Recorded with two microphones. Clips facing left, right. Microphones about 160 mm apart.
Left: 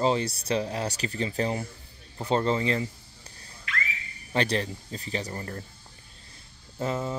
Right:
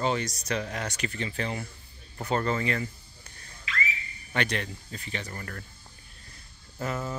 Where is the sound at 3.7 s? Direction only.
55° left (ahead or behind).